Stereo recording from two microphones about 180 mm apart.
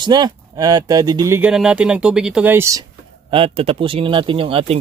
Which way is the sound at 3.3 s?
30° right (ahead or behind).